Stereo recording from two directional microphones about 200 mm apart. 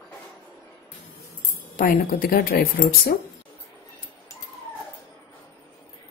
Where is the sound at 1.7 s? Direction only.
45° left (ahead or behind).